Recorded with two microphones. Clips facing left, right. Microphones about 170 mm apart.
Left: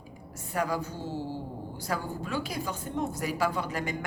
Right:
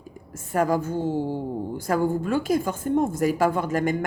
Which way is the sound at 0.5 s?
50° right (ahead or behind).